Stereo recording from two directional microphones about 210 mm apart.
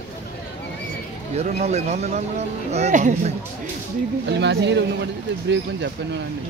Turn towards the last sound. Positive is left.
turn(degrees=-55)  # may be behind; listen again after turning